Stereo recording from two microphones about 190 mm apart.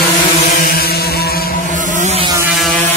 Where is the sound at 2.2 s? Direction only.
15° right (ahead or behind).